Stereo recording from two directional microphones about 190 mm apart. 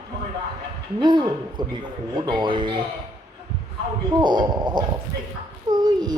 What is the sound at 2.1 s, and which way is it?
Speech, 20° right (ahead or behind).